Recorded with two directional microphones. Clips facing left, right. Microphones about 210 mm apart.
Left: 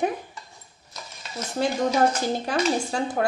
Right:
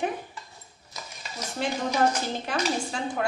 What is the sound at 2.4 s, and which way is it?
Speech, 40° left (ahead or behind).